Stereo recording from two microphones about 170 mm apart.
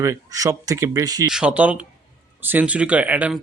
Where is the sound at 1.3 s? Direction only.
5° right (ahead or behind).